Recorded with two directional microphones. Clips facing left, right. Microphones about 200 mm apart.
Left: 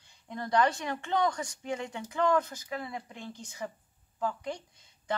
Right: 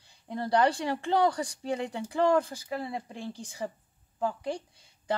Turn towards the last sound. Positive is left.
turn(degrees=-30)  # may be behind; listen again after turning